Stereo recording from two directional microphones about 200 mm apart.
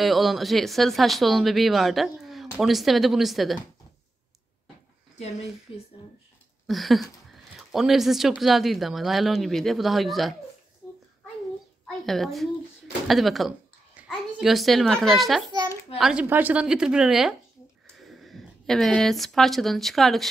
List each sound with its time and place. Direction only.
0.0 s speech: centre (ahead or behind)
5.1 s speech: 30° left (ahead or behind)
6.7 s speech: centre (ahead or behind)
12.1 s a child's voice: centre (ahead or behind)